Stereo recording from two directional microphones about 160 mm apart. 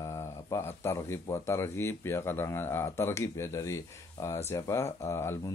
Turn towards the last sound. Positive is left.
turn(degrees=15)  # may be behind; listen again after turning